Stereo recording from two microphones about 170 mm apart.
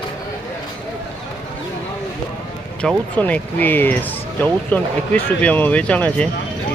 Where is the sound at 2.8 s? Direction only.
Centre (ahead or behind).